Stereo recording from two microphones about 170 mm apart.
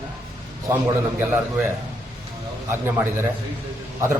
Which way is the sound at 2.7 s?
15° right (ahead or behind).